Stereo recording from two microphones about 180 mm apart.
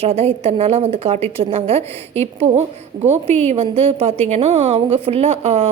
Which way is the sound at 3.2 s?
35° right (ahead or behind).